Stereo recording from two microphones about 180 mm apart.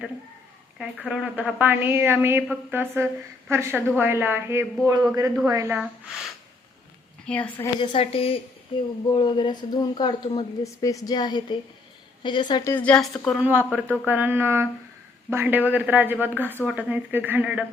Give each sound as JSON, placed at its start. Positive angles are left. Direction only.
{"t": 0.8, "sound": "a woman's voice", "side_deg": -5}
{"t": 5.7, "sound": "speech", "side_deg": -5}
{"t": 7.3, "sound": "a woman's voice", "side_deg": 10}
{"t": 7.8, "sound": "a woman's voice", "side_deg": 30}
{"t": 12.7, "sound": "a woman's voice", "side_deg": 5}
{"t": 13.4, "sound": "a woman's voice", "side_deg": -10}
{"t": 13.8, "sound": "a woman's voice", "side_deg": 10}
{"t": 14.1, "sound": "a woman's voice", "side_deg": -10}